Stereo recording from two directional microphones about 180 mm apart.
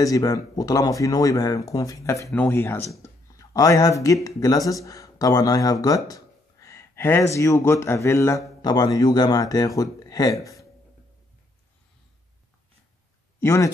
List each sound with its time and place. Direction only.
0.0 s speech: 20° left (ahead or behind)
13.4 s speech: 15° left (ahead or behind)